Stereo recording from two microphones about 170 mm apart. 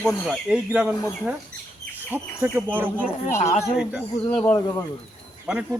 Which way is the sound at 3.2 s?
40° left (ahead or behind).